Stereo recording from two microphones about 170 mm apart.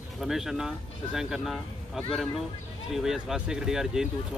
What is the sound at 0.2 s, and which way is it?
Speech, centre (ahead or behind).